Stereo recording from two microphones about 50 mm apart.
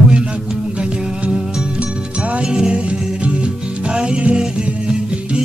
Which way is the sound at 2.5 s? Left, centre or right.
Centre.